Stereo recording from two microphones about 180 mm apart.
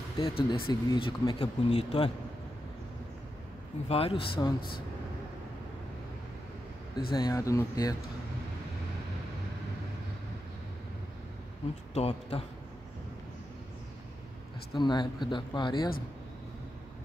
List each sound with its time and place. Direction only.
0.2 s speech: 30° left (ahead or behind)
3.9 s speech: 30° left (ahead or behind)
4.6 s speech: 55° left (ahead or behind)
7.1 s speech: 20° left (ahead or behind)
11.9 s speech: 35° left (ahead or behind)
14.8 s speech: 25° left (ahead or behind)